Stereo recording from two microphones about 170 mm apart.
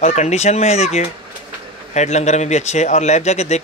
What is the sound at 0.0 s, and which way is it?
Speech, 40° left (ahead or behind).